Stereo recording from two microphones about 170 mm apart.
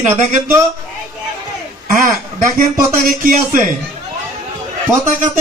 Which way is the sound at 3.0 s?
55° right (ahead or behind).